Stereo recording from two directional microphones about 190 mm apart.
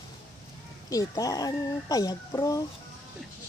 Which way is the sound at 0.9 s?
20° left (ahead or behind).